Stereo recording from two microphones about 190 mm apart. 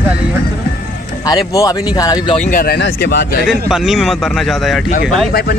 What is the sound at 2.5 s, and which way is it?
Speech, 55° left (ahead or behind).